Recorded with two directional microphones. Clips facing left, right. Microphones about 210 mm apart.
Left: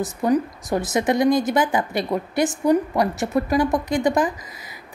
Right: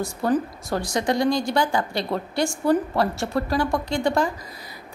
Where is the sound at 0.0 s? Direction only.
20° left (ahead or behind).